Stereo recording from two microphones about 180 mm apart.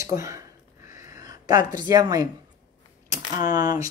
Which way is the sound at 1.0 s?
20° right (ahead or behind).